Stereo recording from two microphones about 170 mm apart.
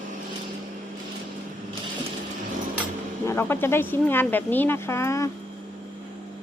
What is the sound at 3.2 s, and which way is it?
Speech, 15° left (ahead or behind).